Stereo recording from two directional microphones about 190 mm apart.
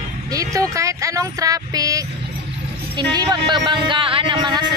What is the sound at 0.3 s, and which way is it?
Speech, 20° right (ahead or behind).